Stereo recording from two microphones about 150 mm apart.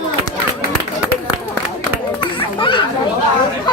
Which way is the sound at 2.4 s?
35° left (ahead or behind).